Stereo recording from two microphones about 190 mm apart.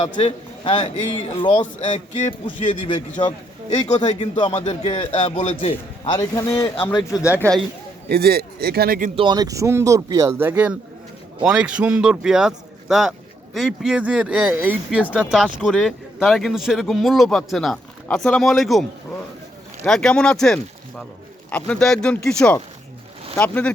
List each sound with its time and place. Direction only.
0.0 s a man's voice: 30° left (ahead or behind)
1.9 s a man's voice: 40° left (ahead or behind)
2.8 s a man's voice: 25° left (ahead or behind)
4.0 s a man's voice: 25° left (ahead or behind); by 7.6 s 10° left (ahead or behind)
8.1 s speech: 55° right (ahead or behind)
9.1 s speech: 25° right (ahead or behind); by 23.7 s 5° left (ahead or behind)